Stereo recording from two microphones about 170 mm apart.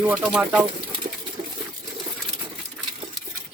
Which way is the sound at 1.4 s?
25° right (ahead or behind).